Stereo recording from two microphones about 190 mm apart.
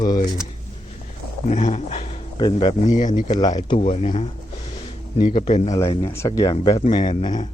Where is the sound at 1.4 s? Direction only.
35° left (ahead or behind).